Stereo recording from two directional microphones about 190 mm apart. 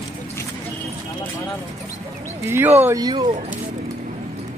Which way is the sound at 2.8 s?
15° right (ahead or behind).